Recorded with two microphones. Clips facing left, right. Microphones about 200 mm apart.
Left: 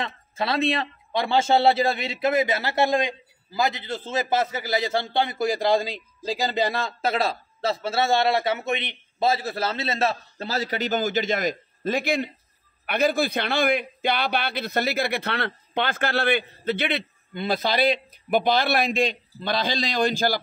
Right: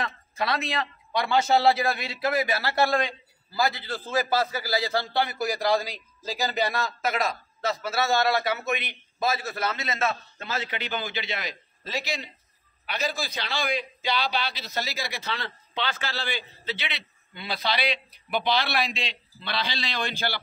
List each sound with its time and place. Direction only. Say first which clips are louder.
0.0 s a man's voice: left 1 dB; 30° left (ahead or behind); by 20.3 s 45° left (ahead or behind)